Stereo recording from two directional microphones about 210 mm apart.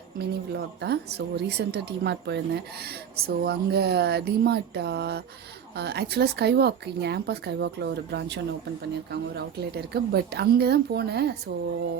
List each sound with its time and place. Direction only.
0.2 s speech: 55° right (ahead or behind)